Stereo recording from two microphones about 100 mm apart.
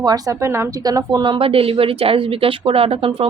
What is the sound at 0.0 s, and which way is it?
Speech, 40° right (ahead or behind).